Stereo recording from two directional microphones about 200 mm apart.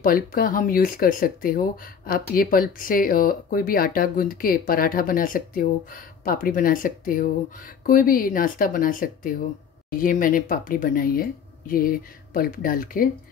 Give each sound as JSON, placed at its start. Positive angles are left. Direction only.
{"t": 0.0, "sound": "speech", "side_deg": 45}